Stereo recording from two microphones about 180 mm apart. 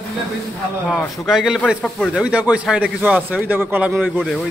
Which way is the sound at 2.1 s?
5° right (ahead or behind).